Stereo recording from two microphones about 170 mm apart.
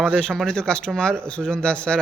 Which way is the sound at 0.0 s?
5° left (ahead or behind).